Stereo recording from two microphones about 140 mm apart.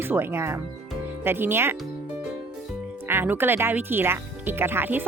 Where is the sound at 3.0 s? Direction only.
15° right (ahead or behind).